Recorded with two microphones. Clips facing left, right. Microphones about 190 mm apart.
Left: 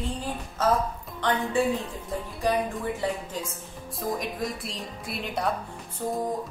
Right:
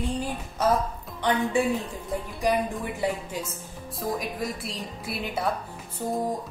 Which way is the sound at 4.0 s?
Centre (ahead or behind).